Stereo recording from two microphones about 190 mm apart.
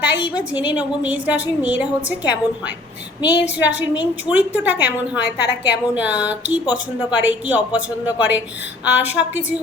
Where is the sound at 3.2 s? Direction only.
65° left (ahead or behind).